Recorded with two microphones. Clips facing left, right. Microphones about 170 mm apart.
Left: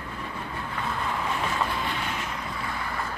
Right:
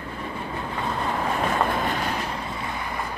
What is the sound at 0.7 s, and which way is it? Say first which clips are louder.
Boat: right 3 dB; 40° right (ahead or behind).